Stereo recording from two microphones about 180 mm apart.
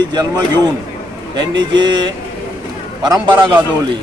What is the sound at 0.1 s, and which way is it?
A man's voice, 25° right (ahead or behind).